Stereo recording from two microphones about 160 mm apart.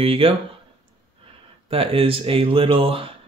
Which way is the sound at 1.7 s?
35° right (ahead or behind).